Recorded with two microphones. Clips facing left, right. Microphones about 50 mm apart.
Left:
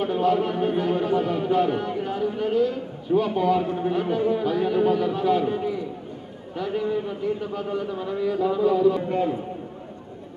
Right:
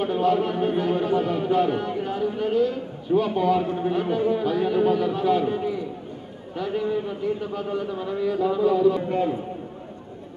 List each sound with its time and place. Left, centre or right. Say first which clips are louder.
0.0 s a sound: even; centre
2.7 s a man's voice: even; centre
4.5 s speech: even; centre
5.4 s a man's voice: even; centre